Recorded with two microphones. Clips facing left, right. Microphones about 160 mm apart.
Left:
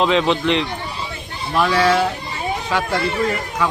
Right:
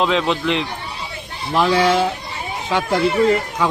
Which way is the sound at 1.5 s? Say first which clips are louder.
Right 1 dB; 20° right (ahead or behind).